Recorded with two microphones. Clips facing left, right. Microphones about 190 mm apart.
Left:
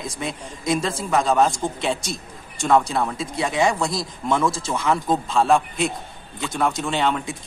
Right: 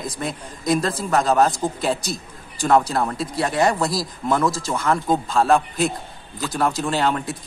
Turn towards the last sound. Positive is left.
turn(degrees=-5)  # may be behind; listen again after turning